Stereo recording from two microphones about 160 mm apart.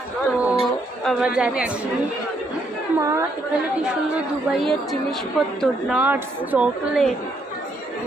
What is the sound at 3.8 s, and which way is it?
A woman's voice, centre (ahead or behind).